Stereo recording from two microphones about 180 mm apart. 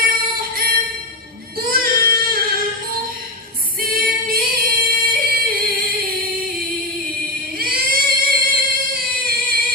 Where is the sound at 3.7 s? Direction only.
55° right (ahead or behind).